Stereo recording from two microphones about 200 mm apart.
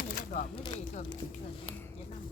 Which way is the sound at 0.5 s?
25° left (ahead or behind).